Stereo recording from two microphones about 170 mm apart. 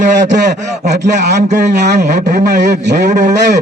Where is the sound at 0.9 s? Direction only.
80° right.